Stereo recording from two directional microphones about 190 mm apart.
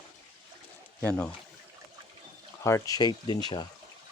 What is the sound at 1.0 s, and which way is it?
Speech, 5° left (ahead or behind).